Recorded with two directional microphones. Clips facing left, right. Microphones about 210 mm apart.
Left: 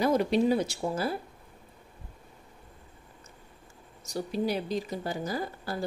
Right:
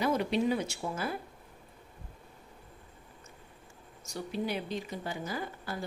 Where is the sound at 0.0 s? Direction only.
40° left (ahead or behind).